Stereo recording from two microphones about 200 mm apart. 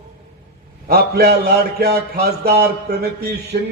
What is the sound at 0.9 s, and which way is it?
A man's voice, 50° right (ahead or behind).